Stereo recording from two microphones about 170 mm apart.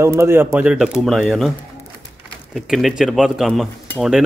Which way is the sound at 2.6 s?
Centre (ahead or behind).